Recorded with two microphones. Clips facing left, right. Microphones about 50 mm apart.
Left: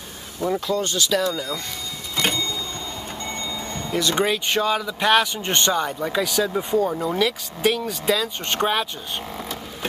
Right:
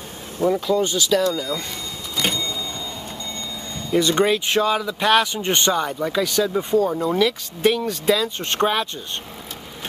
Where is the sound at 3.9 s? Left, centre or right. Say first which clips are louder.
Right 4 dB; centre.